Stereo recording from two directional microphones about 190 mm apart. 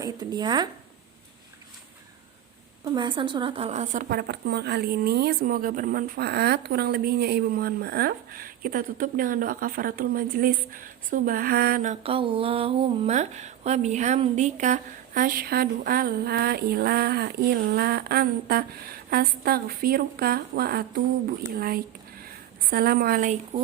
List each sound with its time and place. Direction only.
0.0 s a woman's voice: 20° right (ahead or behind)
2.8 s a woman's voice: 25° right (ahead or behind)
4.1 s speech: 55° right (ahead or behind)